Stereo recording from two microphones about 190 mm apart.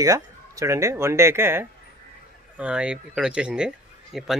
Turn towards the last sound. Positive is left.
turn(degrees=0)  # may be behind; listen again after turning